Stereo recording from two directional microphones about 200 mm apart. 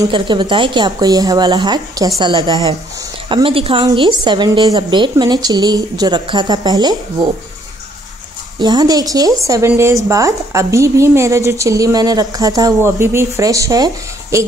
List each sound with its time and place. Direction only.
0.0 s a woman's voice: 25° right (ahead or behind)
8.5 s a woman's voice: 20° right (ahead or behind)